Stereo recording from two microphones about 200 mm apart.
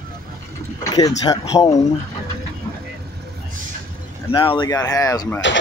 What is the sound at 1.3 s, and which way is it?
Speech, 20° left (ahead or behind).